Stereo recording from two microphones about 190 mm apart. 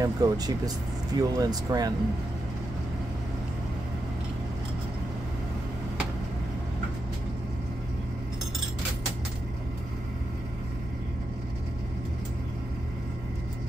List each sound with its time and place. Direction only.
0.0 s speech: 20° right (ahead or behind)